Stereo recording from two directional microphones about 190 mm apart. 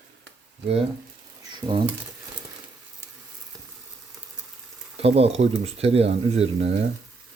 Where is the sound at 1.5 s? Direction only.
25° right (ahead or behind).